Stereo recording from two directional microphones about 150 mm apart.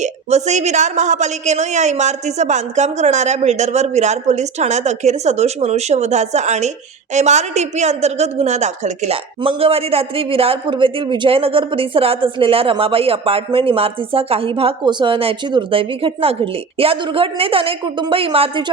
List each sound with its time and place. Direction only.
0.0 s a woman's voice: 50° right (ahead or behind)
9.4 s a man's voice: 40° right (ahead or behind)